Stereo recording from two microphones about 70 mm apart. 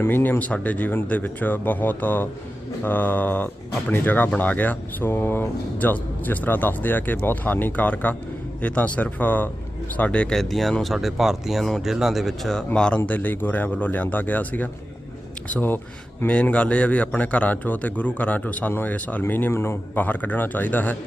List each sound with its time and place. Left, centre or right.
0.0 s speech: left
10.3 s speech: centre
13.1 s speech: left
19.5 s speech: left
20.0 s speech: left